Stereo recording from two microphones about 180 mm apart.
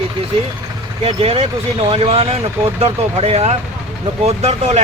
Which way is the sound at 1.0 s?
35° right (ahead or behind).